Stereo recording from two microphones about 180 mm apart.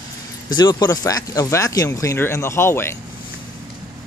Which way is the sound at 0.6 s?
20° left (ahead or behind).